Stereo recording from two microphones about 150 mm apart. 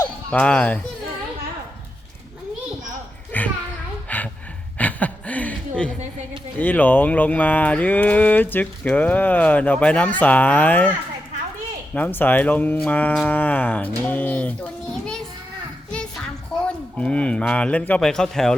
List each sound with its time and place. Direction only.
0.3 s speech: 10° left (ahead or behind)
3.3 s a sound: 10° left (ahead or behind)
4.8 s chuckle: 10° left (ahead or behind)
6.6 s speech: 10° left (ahead or behind)
11.9 s speech: 10° left (ahead or behind)
15.9 s a sound: 5° left (ahead or behind)